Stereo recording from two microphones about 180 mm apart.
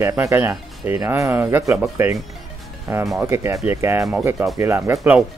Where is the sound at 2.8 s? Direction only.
Centre (ahead or behind).